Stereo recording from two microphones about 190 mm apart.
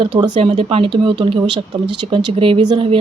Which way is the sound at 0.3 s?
30° right (ahead or behind).